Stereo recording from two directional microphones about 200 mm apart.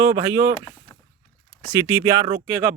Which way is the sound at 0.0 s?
15° right (ahead or behind).